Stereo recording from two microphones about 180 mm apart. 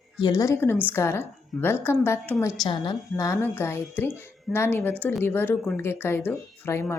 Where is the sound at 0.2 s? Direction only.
20° left (ahead or behind).